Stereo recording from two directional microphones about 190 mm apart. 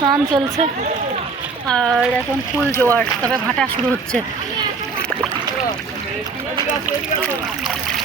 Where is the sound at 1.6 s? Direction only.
5° left (ahead or behind).